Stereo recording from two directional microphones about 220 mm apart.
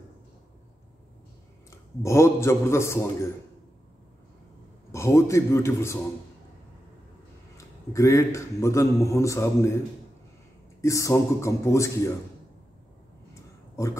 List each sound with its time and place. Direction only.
1.7 s a man's voice: 15° left (ahead or behind)
4.9 s a man's voice: 15° left (ahead or behind)
7.5 s a man's voice: 15° left (ahead or behind)
10.8 s a man's voice: 15° left (ahead or behind)
13.3 s a sound: 15° left (ahead or behind)